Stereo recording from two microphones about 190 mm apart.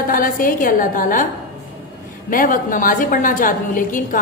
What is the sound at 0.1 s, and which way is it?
A woman's voice, 45° left (ahead or behind).